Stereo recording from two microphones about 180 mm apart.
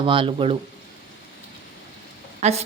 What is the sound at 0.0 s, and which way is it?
Speech, 30° right (ahead or behind).